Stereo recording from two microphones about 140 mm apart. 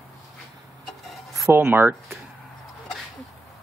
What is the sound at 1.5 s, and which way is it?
Speech, 15° right (ahead or behind).